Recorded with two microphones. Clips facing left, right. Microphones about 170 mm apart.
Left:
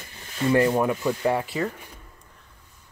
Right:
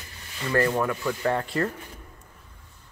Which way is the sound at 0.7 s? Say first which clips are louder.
Left 3 dB; 20° left (ahead or behind).